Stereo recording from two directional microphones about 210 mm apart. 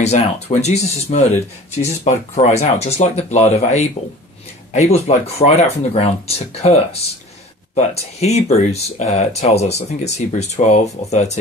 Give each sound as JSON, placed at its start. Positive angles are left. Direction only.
{"t": 0.0, "sound": "speech", "side_deg": 30}